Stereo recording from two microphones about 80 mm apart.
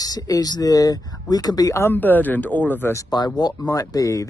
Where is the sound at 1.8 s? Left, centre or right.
Left.